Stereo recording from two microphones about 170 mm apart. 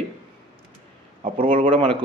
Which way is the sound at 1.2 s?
35° right (ahead or behind).